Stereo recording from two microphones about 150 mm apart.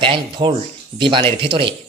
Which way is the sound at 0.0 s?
35° right (ahead or behind).